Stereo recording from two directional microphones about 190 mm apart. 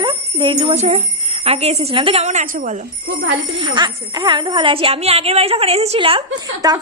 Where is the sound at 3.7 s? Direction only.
25° right (ahead or behind).